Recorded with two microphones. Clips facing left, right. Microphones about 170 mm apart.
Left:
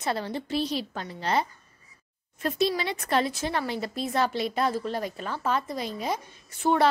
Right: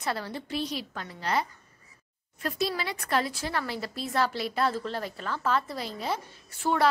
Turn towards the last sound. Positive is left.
turn(degrees=20)  # may be behind; listen again after turning